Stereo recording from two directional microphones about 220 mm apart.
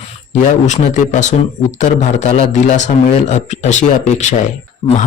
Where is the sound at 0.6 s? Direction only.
35° left (ahead or behind).